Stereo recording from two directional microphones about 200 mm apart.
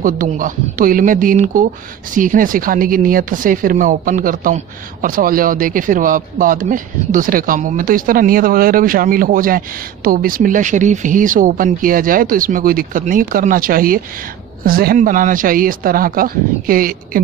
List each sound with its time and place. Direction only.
0.0 s speech: 45° right (ahead or behind)